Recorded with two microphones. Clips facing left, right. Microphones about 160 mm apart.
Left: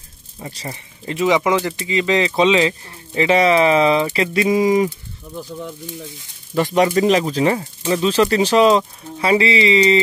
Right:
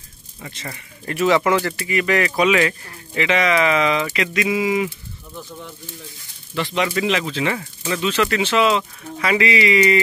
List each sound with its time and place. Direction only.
0.4 s speech: 35° left (ahead or behind)
1.0 s speech: 15° left (ahead or behind); by 4.8 s 40° left (ahead or behind)
6.5 s speech: 45° left (ahead or behind); by 9.9 s 25° left (ahead or behind)